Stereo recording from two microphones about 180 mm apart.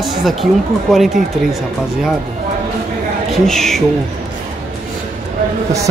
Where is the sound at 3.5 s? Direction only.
Centre (ahead or behind).